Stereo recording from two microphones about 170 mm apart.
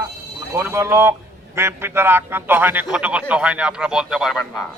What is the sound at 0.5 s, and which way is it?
A man's voice, 15° right (ahead or behind).